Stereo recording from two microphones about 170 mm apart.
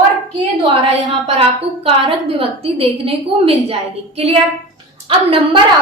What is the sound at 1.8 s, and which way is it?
A woman's voice, 35° right (ahead or behind).